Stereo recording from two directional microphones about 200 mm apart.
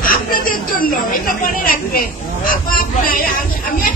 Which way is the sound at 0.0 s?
45° left (ahead or behind).